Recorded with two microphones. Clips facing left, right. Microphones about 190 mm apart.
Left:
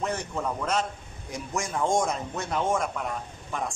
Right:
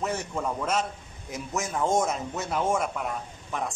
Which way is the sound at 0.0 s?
5° right (ahead or behind).